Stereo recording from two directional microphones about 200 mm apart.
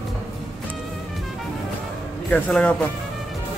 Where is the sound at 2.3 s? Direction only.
5° left (ahead or behind).